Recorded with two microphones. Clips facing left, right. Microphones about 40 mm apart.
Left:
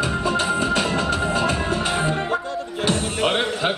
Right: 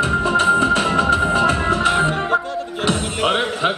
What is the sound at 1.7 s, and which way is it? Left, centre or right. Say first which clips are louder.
Music: right 5 dB; right.